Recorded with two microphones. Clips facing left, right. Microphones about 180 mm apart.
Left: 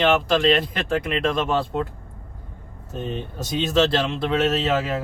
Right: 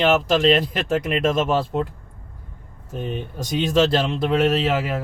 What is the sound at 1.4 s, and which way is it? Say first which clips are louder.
Speech: right 2 dB; 5° right (ahead or behind).